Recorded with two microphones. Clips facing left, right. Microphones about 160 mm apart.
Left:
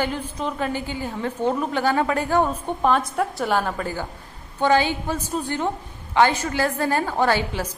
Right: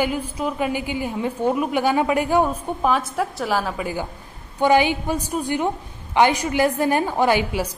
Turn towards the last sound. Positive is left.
turn(degrees=-10)  # may be behind; listen again after turning